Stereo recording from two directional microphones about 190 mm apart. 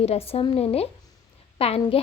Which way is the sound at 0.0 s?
30° left (ahead or behind).